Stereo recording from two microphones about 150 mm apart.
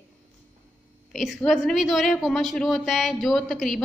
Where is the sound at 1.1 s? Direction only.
Centre (ahead or behind).